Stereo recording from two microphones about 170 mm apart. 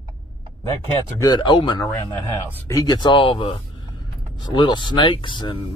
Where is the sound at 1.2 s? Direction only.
25° left (ahead or behind).